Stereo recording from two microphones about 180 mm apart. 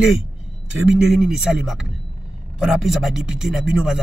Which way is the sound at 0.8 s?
5° right (ahead or behind).